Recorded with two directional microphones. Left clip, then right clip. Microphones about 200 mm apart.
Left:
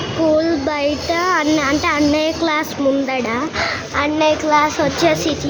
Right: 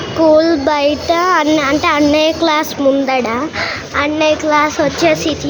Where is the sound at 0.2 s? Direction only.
5° right (ahead or behind).